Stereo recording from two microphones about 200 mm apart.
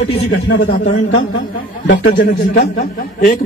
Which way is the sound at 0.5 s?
45° left (ahead or behind).